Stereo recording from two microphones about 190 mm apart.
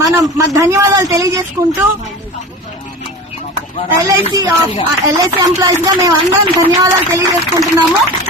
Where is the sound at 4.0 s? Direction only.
15° right (ahead or behind).